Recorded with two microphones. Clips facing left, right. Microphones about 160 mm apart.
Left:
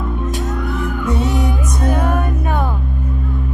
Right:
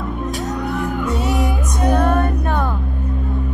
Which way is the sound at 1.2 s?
Centre (ahead or behind).